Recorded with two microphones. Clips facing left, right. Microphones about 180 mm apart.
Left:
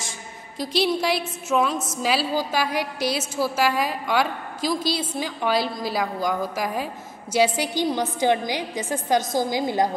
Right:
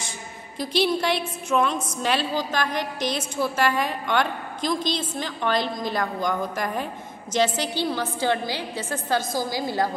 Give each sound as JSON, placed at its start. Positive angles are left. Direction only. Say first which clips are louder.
{"t": 0.6, "sound": "a woman's voice", "louder": "even", "side_deg": 0}